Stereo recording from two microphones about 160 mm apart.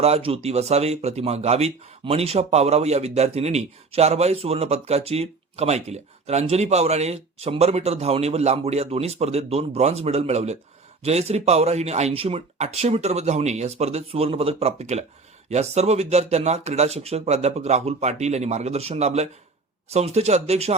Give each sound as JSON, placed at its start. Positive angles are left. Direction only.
{"t": 0.0, "sound": "speech", "side_deg": -40}